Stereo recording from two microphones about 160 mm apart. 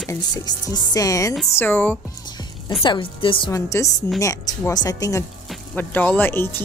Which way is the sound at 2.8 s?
30° left (ahead or behind).